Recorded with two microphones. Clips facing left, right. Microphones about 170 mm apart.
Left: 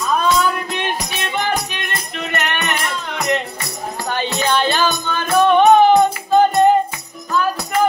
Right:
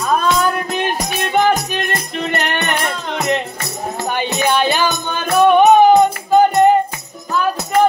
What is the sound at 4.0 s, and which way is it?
Music, 20° right (ahead or behind).